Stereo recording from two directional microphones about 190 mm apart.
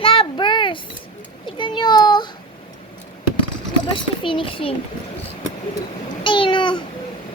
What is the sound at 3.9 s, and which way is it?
Speech, 25° left (ahead or behind).